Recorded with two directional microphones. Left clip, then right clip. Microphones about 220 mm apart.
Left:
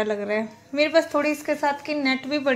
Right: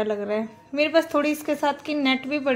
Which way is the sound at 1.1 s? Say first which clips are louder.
Even; 20° right (ahead or behind).